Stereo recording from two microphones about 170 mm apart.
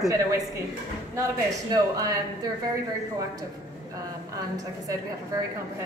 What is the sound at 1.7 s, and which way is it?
Speech, 20° right (ahead or behind).